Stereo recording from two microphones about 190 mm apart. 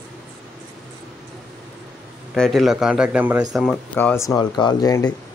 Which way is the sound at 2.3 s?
Centre (ahead or behind).